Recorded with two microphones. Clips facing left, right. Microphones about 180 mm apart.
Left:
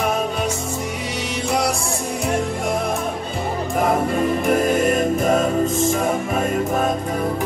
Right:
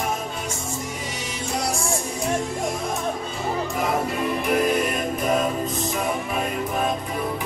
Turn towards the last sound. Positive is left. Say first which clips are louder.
# left 5 dB
turn(degrees=45)  # may be behind; listen again after turning